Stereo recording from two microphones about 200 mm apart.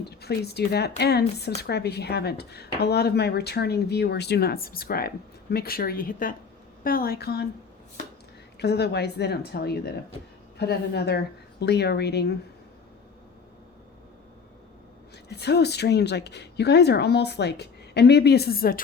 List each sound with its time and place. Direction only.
0.0 s speech: 55° left (ahead or behind)
8.5 s speech: 55° left (ahead or behind)
15.3 s speech: 55° left (ahead or behind)